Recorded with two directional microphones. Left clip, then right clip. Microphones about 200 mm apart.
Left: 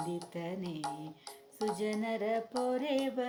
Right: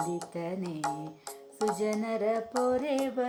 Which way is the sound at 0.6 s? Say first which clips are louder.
Right 6 dB; 30° right (ahead or behind).